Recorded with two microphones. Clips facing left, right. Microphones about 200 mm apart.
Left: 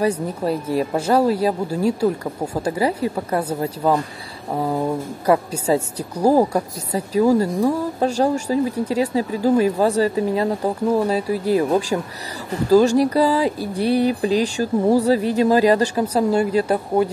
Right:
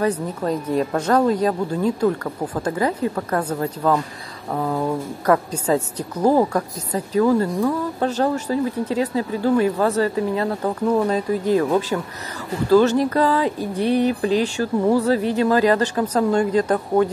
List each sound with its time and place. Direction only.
0.0 s a woman's voice: 10° left (ahead or behind)
11.9 s a man's voice: 25° left (ahead or behind)
12.6 s a woman's voice: 10° left (ahead or behind)